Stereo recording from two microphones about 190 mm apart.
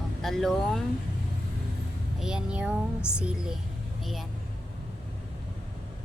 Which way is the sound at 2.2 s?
5° right (ahead or behind).